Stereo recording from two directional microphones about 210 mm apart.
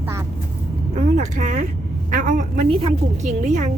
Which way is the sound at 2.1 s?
35° right (ahead or behind).